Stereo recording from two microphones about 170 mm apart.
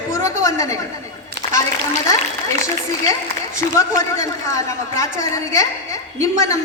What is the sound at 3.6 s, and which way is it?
A man's voice, 20° left (ahead or behind).